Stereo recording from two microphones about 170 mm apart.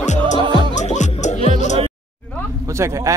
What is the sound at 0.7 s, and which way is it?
Music, 45° left (ahead or behind).